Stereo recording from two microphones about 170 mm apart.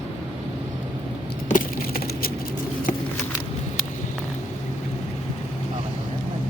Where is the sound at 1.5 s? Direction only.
55° left (ahead or behind).